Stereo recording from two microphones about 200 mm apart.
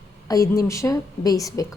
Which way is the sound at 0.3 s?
15° left (ahead or behind).